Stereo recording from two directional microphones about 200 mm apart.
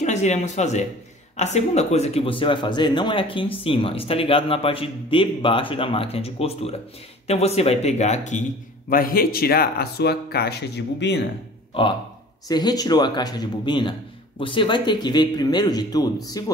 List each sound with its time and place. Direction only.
0.0 s a man's voice: 35° left (ahead or behind); by 11.2 s 60° left (ahead or behind)
11.7 s speech: 25° left (ahead or behind)